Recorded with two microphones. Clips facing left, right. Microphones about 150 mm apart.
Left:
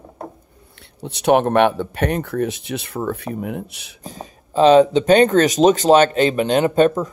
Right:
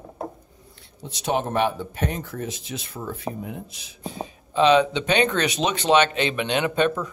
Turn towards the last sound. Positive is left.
turn(degrees=40)  # may be behind; listen again after turning